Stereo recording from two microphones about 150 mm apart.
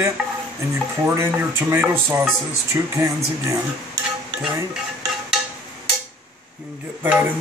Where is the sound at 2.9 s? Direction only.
20° right (ahead or behind).